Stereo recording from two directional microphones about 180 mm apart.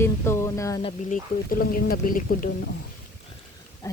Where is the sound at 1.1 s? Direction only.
55° left (ahead or behind).